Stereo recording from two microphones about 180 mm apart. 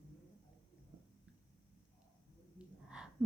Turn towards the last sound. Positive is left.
turn(degrees=-5)  # may be behind; listen again after turning